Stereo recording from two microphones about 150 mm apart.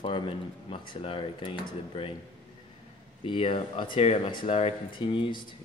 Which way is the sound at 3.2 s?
35° left (ahead or behind).